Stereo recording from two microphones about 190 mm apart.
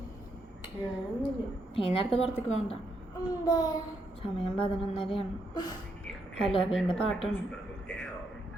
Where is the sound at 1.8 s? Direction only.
30° left (ahead or behind).